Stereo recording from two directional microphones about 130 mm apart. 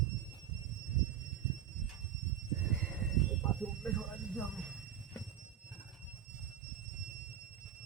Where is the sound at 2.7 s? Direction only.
15° left (ahead or behind).